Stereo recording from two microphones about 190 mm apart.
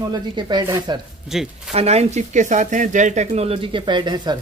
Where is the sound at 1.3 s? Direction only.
Centre (ahead or behind).